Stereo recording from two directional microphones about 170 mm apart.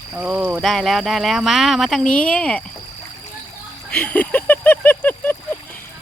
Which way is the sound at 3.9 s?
10° left (ahead or behind).